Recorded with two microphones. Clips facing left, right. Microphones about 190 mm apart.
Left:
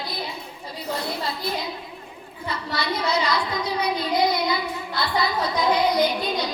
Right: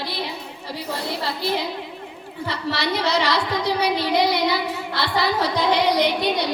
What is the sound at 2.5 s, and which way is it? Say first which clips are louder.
A woman's voice: right 3 dB; 75° right (ahead or behind).